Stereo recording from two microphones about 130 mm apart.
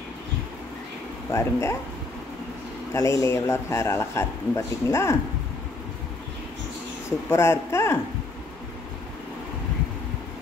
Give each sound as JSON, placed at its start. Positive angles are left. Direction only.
{"t": 1.3, "sound": "a man's voice", "side_deg": 20}
{"t": 2.9, "sound": "a man's voice", "side_deg": 20}
{"t": 7.2, "sound": "a man's voice", "side_deg": 20}